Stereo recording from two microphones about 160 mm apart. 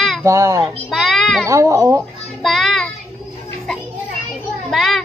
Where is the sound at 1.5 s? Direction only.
20° right (ahead or behind).